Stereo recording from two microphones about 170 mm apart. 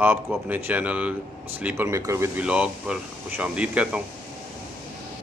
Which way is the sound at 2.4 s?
5° right (ahead or behind).